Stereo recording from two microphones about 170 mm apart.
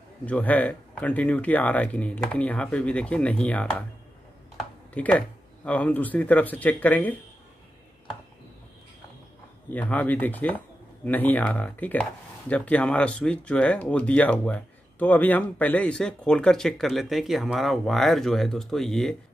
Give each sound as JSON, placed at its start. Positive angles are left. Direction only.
{"t": 0.3, "sound": "speech", "side_deg": 10}
{"t": 4.6, "sound": "computer keyboard", "side_deg": 5}
{"t": 5.7, "sound": "speech", "side_deg": 10}
{"t": 9.7, "sound": "speech", "side_deg": 10}